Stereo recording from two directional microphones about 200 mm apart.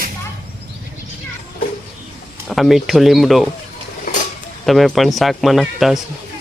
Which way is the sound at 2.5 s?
Centre (ahead or behind).